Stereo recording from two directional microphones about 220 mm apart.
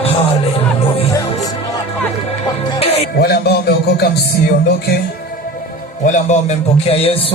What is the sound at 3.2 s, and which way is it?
Music, 45° left (ahead or behind).